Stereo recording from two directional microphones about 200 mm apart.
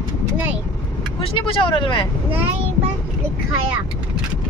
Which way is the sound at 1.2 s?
30° left (ahead or behind).